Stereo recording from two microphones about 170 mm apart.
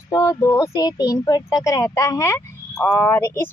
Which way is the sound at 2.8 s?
5° left (ahead or behind).